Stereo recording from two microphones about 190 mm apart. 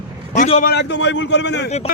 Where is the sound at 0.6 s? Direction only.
65° left (ahead or behind).